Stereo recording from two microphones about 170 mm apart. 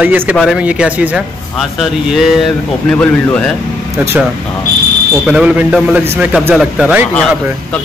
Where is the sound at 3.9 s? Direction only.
15° right (ahead or behind).